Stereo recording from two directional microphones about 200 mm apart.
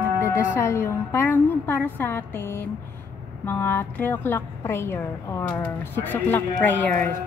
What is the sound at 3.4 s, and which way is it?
A woman's voice, 10° left (ahead or behind).